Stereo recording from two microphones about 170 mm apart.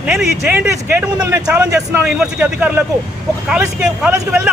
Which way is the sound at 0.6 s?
15° right (ahead or behind).